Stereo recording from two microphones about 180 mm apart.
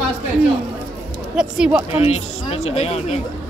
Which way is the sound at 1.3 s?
5° right (ahead or behind).